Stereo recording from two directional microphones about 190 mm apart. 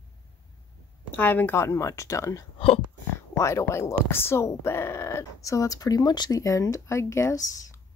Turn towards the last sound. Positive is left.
turn(degrees=20)  # may be behind; listen again after turning